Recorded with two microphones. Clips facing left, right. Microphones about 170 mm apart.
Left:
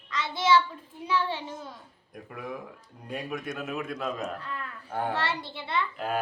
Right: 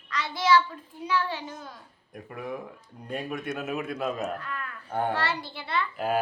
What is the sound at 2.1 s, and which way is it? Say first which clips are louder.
Speech: right 2 dB; centre (ahead or behind).